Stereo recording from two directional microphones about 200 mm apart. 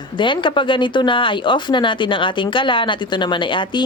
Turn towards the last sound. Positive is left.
turn(degrees=25)  # may be behind; listen again after turning